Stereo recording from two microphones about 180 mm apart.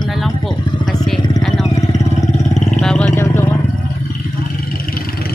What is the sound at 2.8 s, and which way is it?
Vehicle, 5° left (ahead or behind).